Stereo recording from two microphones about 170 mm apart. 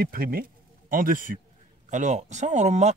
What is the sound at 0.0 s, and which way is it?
Speech, 60° right (ahead or behind).